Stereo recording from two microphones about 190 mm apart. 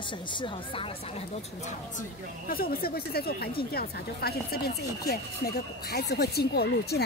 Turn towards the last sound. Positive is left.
turn(degrees=55)  # may be behind; listen again after turning